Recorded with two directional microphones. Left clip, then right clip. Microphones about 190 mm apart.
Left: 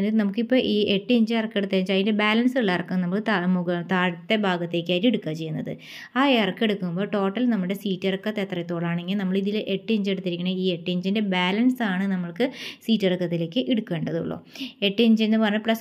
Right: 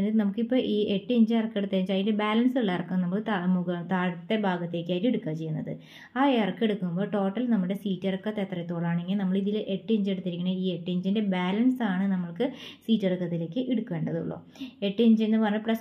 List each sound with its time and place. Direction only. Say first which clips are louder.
0.0 s a woman's voice: left 3 dB; 30° left (ahead or behind)